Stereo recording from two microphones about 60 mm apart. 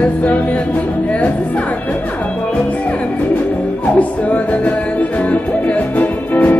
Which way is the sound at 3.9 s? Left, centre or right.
Left.